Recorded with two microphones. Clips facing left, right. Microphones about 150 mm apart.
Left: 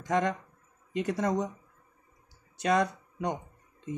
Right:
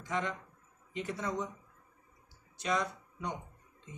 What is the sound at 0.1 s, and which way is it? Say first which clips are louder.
A man's voice: left 8 dB; 45° left (ahead or behind).